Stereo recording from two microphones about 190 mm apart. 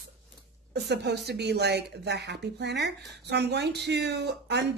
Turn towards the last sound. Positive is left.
turn(degrees=-65)  # may be behind; listen again after turning